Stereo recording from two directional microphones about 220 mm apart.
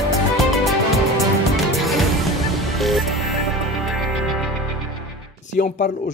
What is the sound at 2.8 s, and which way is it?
Music, centre (ahead or behind).